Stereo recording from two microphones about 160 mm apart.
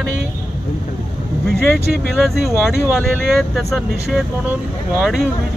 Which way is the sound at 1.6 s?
10° left (ahead or behind).